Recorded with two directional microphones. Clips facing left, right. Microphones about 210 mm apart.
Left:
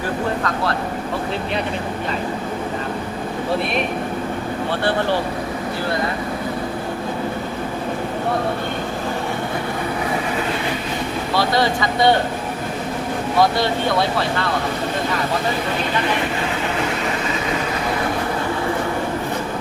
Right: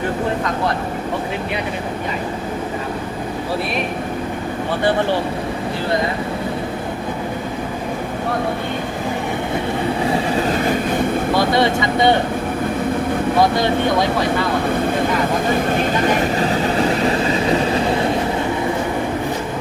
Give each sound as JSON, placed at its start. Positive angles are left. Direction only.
{"t": 10.7, "sound": "vehicle", "side_deg": -50}
{"t": 11.5, "sound": "speech", "side_deg": -20}
{"t": 15.7, "sound": "vehicle", "side_deg": -45}